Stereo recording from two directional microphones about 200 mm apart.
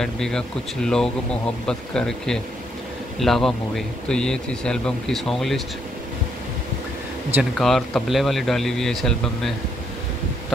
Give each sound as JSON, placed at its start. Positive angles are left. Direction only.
{"t": 0.0, "sound": "speech", "side_deg": 5}
{"t": 7.5, "sound": "speech", "side_deg": 0}